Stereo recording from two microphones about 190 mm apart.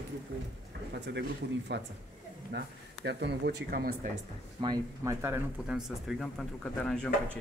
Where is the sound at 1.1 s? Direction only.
65° right (ahead or behind).